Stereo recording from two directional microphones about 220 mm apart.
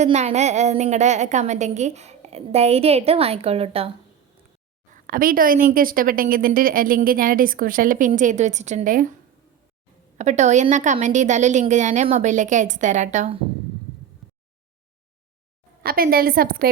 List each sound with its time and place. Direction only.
0.0 s a woman's voice: 30° right (ahead or behind)
4.9 s a woman's voice: 40° right (ahead or behind)
10.2 s a woman's voice: 30° right (ahead or behind)
14.2 s a sound: centre (ahead or behind)
15.8 s a woman's voice: 40° right (ahead or behind)